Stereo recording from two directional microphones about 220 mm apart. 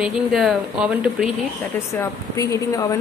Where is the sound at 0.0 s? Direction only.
Centre (ahead or behind).